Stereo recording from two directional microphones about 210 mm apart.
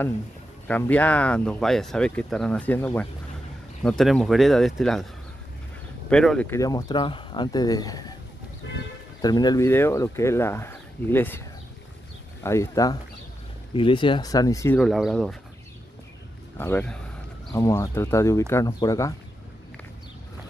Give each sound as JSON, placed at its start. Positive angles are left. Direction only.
{"t": 0.7, "sound": "speech", "side_deg": 5}
{"t": 6.0, "sound": "speech", "side_deg": 5}
{"t": 9.2, "sound": "speech", "side_deg": 20}
{"t": 12.4, "sound": "speech", "side_deg": 15}
{"t": 14.8, "sound": "speech", "side_deg": 0}
{"t": 16.5, "sound": "speech", "side_deg": 10}